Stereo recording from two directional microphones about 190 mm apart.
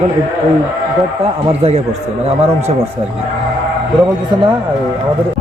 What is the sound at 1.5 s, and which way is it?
Speech, 35° right (ahead or behind).